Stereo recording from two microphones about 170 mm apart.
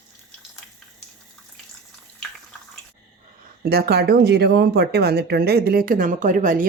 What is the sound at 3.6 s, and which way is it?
Speech, 65° right (ahead or behind).